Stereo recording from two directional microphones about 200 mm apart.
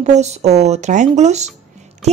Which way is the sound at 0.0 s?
35° right (ahead or behind).